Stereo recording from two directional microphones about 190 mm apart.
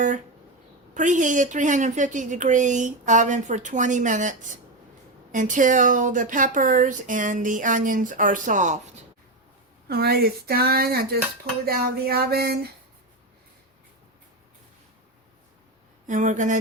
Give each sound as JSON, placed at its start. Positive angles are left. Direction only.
{"t": 0.9, "sound": "a woman's voice", "side_deg": -40}
{"t": 9.9, "sound": "speech", "side_deg": -55}
{"t": 16.0, "sound": "a woman's voice", "side_deg": -40}